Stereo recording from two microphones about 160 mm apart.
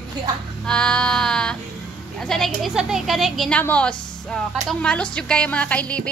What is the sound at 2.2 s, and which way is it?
Speech, centre (ahead or behind).